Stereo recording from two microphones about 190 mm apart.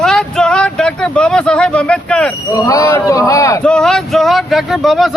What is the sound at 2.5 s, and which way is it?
Speech, 15° left (ahead or behind).